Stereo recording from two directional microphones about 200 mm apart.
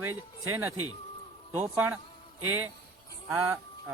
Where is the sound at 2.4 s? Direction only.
90° right.